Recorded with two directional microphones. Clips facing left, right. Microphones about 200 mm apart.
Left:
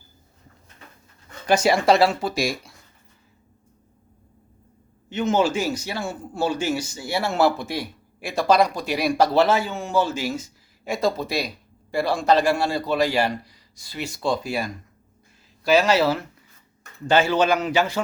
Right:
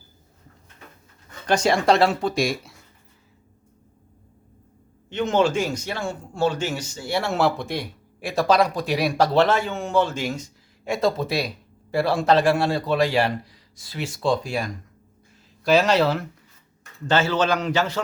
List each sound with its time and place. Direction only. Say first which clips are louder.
1.5 s speech: left 1 dB; 5° left (ahead or behind)
5.0 s a man's voice: even; 5° left (ahead or behind)